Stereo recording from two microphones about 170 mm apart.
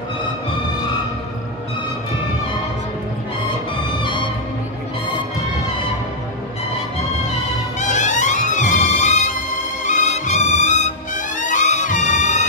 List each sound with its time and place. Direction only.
4.0 s music: 25° left (ahead or behind)
7.8 s music: 45° left (ahead or behind)